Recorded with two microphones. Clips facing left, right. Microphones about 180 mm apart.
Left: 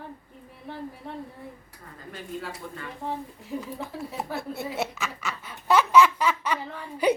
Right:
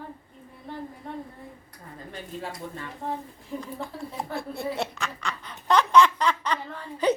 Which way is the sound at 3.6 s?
5° left (ahead or behind).